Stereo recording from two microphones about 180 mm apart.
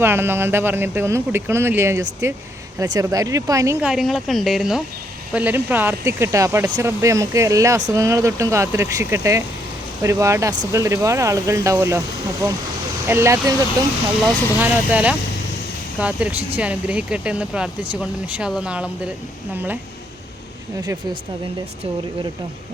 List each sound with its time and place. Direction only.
0.0 s speech: 10° right (ahead or behind)
3.8 s speech: 5° right (ahead or behind); by 13.7 s 20° right (ahead or behind)
14.6 s speech: 10° right (ahead or behind)
20.8 s speech: 20° right (ahead or behind)